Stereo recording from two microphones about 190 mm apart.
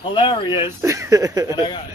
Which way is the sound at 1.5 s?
25° left (ahead or behind).